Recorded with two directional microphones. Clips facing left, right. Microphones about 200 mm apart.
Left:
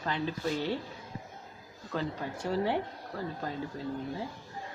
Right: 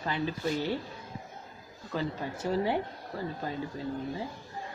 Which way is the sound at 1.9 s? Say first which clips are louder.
Right 1 dB; 5° right (ahead or behind).